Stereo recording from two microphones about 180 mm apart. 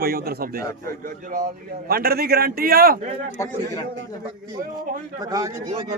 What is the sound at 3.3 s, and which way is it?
Speech, 15° left (ahead or behind).